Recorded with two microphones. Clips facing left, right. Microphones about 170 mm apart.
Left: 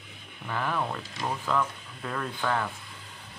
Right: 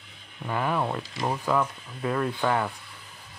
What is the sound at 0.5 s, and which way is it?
Speech, 20° right (ahead or behind).